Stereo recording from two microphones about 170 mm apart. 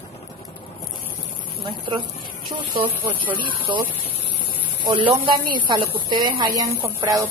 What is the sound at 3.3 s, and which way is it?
Speech, 30° right (ahead or behind).